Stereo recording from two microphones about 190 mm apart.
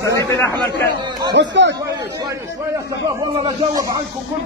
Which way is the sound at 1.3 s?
70° right (ahead or behind).